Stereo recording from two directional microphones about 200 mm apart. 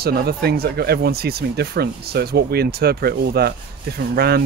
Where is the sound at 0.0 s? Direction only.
50° right (ahead or behind).